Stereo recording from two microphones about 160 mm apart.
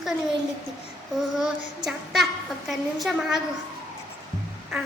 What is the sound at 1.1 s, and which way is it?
A woman's voice, centre (ahead or behind).